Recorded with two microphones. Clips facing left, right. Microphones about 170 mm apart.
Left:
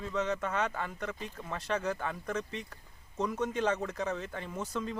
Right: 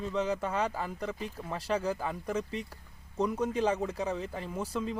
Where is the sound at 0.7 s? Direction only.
5° right (ahead or behind).